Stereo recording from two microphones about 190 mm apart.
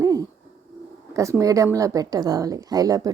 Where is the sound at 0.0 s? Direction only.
20° right (ahead or behind).